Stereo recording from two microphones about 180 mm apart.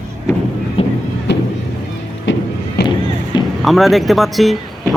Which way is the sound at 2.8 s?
65° left (ahead or behind).